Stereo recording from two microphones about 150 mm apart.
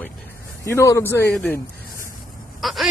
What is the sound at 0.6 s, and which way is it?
Speech, 20° left (ahead or behind).